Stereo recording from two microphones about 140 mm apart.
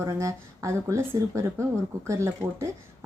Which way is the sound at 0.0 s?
20° right (ahead or behind).